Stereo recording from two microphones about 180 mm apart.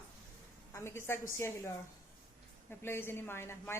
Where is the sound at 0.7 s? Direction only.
15° left (ahead or behind).